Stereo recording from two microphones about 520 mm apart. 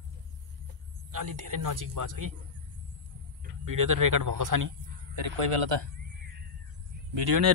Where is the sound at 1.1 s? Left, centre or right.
Right.